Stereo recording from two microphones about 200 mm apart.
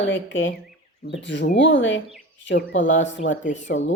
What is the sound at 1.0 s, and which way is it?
A woman's voice, 60° left (ahead or behind).